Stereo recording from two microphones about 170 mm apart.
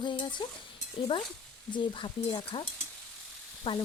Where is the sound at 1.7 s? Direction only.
30° left (ahead or behind).